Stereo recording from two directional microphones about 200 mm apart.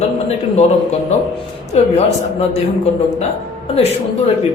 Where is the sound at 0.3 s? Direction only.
35° left (ahead or behind).